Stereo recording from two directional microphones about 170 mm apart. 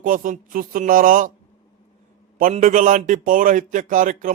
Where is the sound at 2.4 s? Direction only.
50° right (ahead or behind).